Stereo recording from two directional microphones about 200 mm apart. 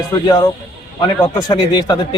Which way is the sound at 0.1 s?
20° left (ahead or behind).